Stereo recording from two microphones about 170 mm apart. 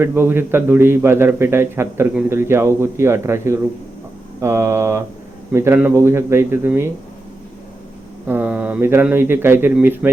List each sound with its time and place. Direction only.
0.0 s a man's voice: 10° right (ahead or behind)
8.3 s a man's voice: 10° right (ahead or behind)